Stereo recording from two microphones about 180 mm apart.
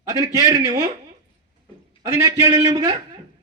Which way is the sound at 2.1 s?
20° right (ahead or behind).